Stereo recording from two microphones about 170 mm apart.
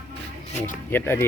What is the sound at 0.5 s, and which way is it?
Speech, 50° left (ahead or behind).